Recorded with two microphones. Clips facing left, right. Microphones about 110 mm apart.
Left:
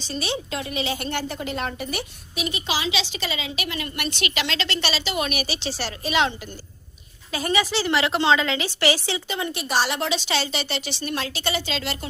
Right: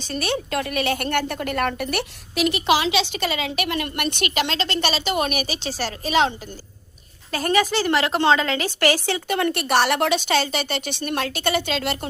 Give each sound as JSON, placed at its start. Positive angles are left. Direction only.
{"t": 0.0, "sound": "a woman's voice", "side_deg": -50}